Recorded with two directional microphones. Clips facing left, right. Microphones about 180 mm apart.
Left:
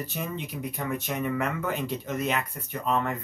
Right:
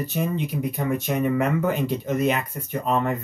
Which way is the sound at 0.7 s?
15° right (ahead or behind).